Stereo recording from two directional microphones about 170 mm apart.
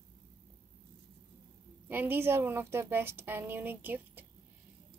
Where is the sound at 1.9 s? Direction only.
10° right (ahead or behind).